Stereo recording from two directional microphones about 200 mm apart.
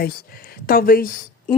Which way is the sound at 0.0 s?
50° left (ahead or behind).